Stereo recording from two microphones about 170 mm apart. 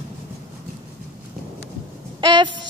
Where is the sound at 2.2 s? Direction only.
25° right (ahead or behind).